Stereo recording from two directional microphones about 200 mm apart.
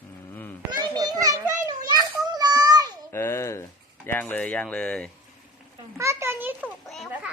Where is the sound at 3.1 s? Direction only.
10° left (ahead or behind).